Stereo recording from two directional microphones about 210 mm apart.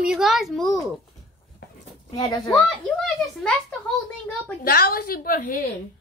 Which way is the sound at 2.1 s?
20° left (ahead or behind).